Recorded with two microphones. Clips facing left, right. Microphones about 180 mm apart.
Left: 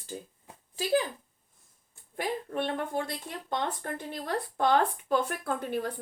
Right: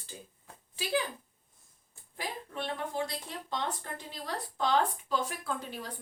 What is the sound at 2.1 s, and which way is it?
A woman's voice, 55° left (ahead or behind).